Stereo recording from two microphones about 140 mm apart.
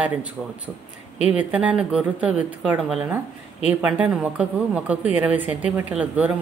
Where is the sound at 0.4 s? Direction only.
5° right (ahead or behind).